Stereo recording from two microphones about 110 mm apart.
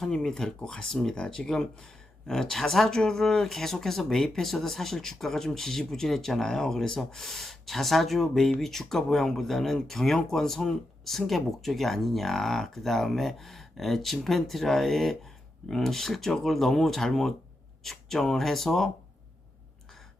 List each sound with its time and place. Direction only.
0.0 s speech: 5° left (ahead or behind)